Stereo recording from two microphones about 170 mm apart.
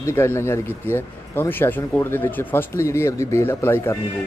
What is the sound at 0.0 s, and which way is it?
Speech, 15° left (ahead or behind).